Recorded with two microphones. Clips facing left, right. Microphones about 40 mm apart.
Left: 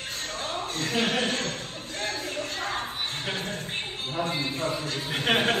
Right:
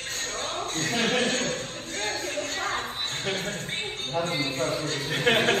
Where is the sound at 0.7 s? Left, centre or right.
Right.